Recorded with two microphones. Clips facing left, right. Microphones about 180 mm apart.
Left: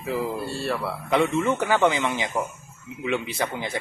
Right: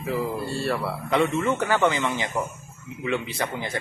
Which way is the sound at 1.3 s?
15° left (ahead or behind).